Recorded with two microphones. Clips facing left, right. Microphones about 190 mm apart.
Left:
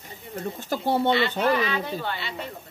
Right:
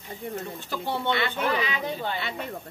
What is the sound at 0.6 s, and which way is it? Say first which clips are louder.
Speech: left 11 dB; 40° left (ahead or behind).